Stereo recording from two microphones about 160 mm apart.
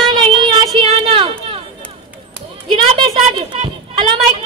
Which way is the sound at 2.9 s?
35° right (ahead or behind).